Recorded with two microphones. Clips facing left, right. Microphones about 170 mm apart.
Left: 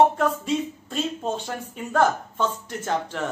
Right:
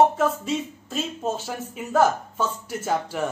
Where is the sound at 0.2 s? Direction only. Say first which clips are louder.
Even; centre (ahead or behind).